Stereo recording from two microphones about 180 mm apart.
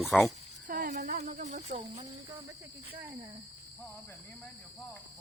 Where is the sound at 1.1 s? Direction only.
40° right (ahead or behind).